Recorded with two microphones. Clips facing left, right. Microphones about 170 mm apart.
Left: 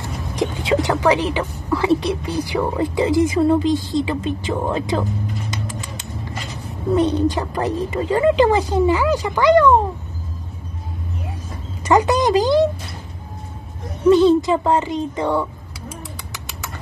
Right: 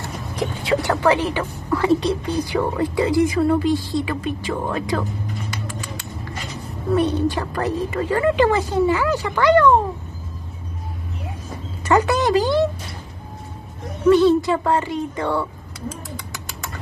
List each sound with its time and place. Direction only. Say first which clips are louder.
0.4 s a woman's voice: left 2 dB; 15° left (ahead or behind)
2.8 s speech: left 1 dB; 20° left (ahead or behind)
5.5 s a sound: left 1 dB; 20° left (ahead or behind)
7.0 s a woman's voice: left 2 dB; 20° left (ahead or behind)
11.8 s speech: left 2 dB; 15° left (ahead or behind)
14.0 s speech: left 1 dB; 20° left (ahead or behind)